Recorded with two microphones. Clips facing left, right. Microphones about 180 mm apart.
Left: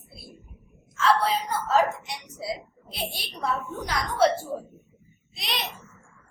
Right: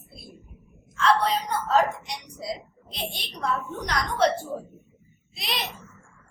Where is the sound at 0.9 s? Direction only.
Centre (ahead or behind).